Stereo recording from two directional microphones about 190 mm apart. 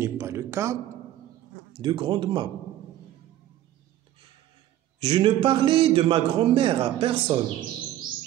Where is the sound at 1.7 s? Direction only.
25° right (ahead or behind).